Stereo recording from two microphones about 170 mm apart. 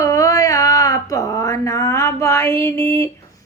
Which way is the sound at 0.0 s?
20° left (ahead or behind).